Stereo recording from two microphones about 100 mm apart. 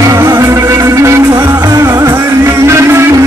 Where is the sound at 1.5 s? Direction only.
40° right (ahead or behind).